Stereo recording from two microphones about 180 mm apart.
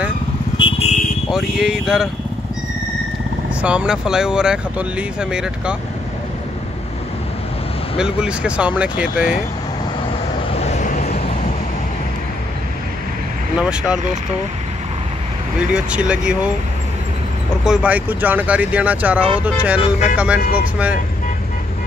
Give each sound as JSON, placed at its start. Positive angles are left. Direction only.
{"t": 0.6, "sound": "vehicle", "side_deg": 30}
{"t": 1.3, "sound": "speech", "side_deg": -5}
{"t": 3.6, "sound": "speech", "side_deg": -5}
{"t": 8.0, "sound": "speech", "side_deg": -5}
{"t": 10.6, "sound": "vehicle", "side_deg": 40}
{"t": 13.6, "sound": "speech", "side_deg": -5}
{"t": 15.7, "sound": "speech", "side_deg": -5}
{"t": 17.6, "sound": "speech", "side_deg": -5}
{"t": 19.8, "sound": "speech", "side_deg": 40}